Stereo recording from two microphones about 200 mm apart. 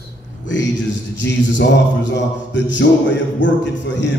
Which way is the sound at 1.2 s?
65° left (ahead or behind).